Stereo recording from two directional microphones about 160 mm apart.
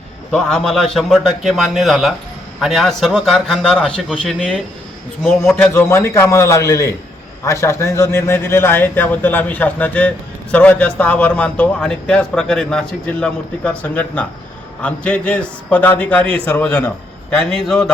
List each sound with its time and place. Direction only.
0.3 s a man's voice: 5° left (ahead or behind)
5.7 s a man's voice: 15° left (ahead or behind)
16.2 s a man's voice: 35° right (ahead or behind)
16.5 s a man's voice: 5° left (ahead or behind)